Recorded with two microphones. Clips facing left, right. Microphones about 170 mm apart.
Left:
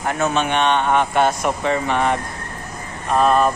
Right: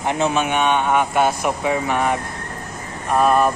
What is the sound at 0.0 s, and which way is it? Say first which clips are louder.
Speech: right 1 dB; 20° right (ahead or behind).